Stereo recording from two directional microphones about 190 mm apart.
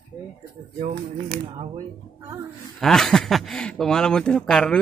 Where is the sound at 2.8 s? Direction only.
Centre (ahead or behind).